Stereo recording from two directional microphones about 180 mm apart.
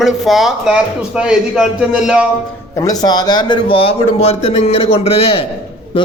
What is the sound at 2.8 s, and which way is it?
Speech, 20° left (ahead or behind).